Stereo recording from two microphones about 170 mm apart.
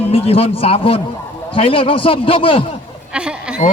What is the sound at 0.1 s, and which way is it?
Speech, 35° left (ahead or behind).